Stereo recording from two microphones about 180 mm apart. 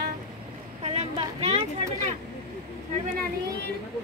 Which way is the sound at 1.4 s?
35° right (ahead or behind).